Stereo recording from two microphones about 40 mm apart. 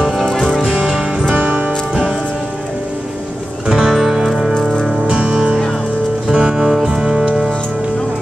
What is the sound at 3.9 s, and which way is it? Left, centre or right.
Music, centre.